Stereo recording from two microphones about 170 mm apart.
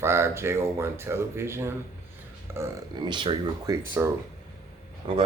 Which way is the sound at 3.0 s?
30° right (ahead or behind).